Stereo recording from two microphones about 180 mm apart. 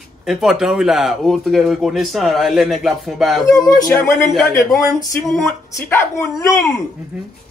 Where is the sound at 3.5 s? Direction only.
20° left (ahead or behind).